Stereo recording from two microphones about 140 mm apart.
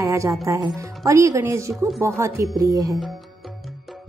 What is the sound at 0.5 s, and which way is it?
Speech, 25° right (ahead or behind).